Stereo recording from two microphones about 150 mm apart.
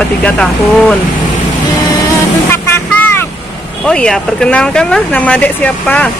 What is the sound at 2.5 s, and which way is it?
Vehicle, 15° left (ahead or behind).